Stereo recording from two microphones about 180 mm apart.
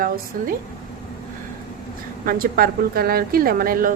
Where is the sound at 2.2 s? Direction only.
55° right (ahead or behind).